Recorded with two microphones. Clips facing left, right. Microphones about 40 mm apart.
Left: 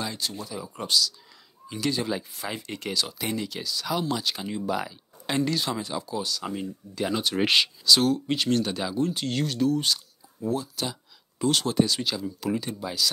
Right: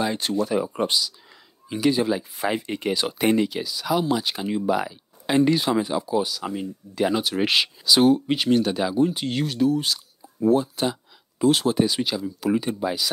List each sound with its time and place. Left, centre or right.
0.2 s speech: right
0.7 s speech: right
3.1 s speech: right
3.4 s speech: centre
10.4 s speech: right
11.3 s speech: centre